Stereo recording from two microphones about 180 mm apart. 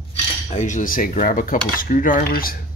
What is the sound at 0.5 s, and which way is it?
Cutlery, 45° left (ahead or behind).